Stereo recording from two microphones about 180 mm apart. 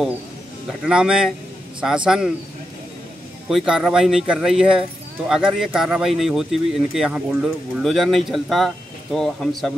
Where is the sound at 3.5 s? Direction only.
Centre (ahead or behind).